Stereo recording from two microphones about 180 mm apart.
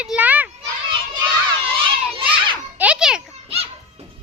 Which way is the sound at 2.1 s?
30° right (ahead or behind).